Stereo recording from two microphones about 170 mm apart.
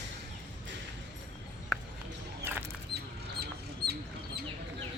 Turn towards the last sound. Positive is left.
turn(degrees=-70)  # may be behind; listen again after turning